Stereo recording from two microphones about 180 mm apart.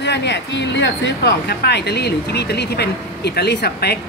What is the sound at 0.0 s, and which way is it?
Speech, 70° left (ahead or behind).